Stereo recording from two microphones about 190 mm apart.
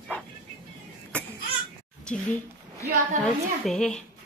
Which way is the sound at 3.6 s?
5° left (ahead or behind).